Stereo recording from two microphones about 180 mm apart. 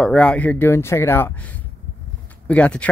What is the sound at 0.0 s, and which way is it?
Speech, 5° left (ahead or behind).